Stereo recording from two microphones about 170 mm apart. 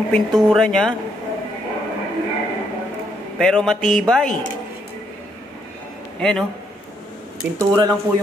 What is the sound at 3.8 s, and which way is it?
Speech, 50° left (ahead or behind).